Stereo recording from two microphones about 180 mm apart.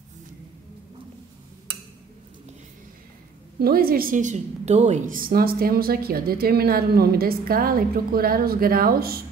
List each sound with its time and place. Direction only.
3.5 s a woman's voice: 55° right (ahead or behind)